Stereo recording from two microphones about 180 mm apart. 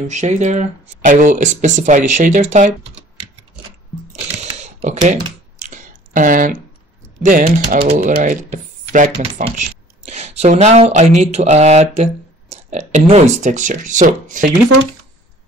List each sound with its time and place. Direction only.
0.0 s speech: 40° right (ahead or behind)
4.1 s camera: 40° right (ahead or behind)
5.6 s a sound: 45° right (ahead or behind)
7.2 s speech: 50° right (ahead or behind)